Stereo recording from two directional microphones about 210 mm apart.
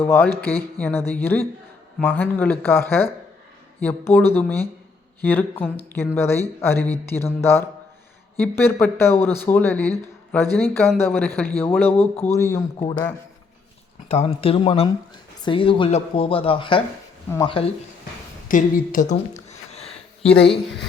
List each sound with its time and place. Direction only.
0.0 s speech: 10° left (ahead or behind)
14.1 s speech: 30° left (ahead or behind)
18.4 s a sound: 40° left (ahead or behind)